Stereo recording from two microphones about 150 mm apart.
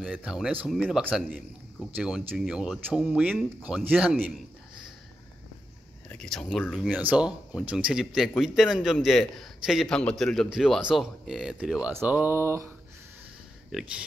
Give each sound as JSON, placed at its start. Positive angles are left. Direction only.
{"t": 0.2, "sound": "a man's voice", "side_deg": -5}
{"t": 6.0, "sound": "a man's voice", "side_deg": 5}
{"t": 6.9, "sound": "a man's voice", "side_deg": -10}
{"t": 13.7, "sound": "speech", "side_deg": 0}